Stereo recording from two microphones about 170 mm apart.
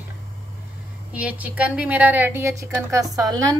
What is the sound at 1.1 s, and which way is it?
A woman's voice, 10° right (ahead or behind).